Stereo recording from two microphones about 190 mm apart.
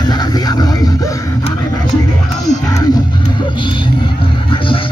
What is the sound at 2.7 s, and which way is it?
Music, 20° left (ahead or behind).